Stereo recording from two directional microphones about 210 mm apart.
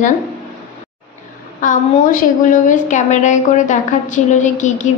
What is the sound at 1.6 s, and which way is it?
A woman's voice, 40° left (ahead or behind).